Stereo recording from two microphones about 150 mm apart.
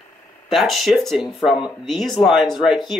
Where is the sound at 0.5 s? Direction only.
Centre (ahead or behind).